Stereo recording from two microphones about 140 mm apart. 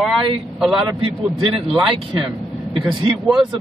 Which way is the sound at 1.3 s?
40° right (ahead or behind).